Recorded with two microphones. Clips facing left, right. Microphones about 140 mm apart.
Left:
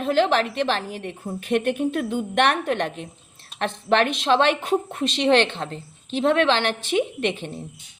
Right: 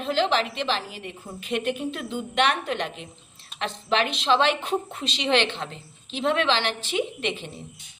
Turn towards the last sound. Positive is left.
turn(degrees=55)  # may be behind; listen again after turning